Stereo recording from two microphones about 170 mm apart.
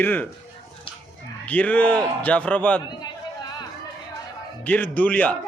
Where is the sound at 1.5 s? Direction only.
10° left (ahead or behind).